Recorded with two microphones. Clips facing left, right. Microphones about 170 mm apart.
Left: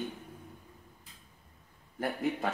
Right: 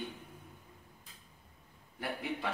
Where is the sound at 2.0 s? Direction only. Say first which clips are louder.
Left 6 dB; 45° left (ahead or behind).